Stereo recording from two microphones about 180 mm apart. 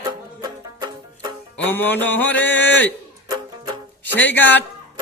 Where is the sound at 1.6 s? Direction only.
10° left (ahead or behind).